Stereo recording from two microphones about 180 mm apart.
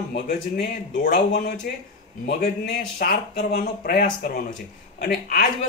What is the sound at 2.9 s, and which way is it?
Speech, 55° left (ahead or behind).